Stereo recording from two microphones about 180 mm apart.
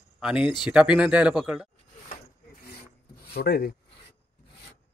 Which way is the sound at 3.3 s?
60° left (ahead or behind).